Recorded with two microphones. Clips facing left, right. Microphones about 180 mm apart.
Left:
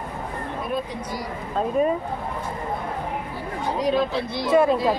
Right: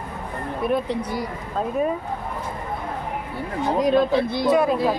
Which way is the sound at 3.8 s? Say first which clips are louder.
Right 4 dB; 55° right (ahead or behind).